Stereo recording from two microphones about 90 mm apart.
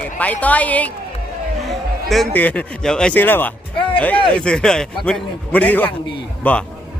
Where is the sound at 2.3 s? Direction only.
15° left (ahead or behind).